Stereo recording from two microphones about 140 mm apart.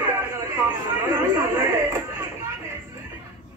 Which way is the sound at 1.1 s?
20° right (ahead or behind).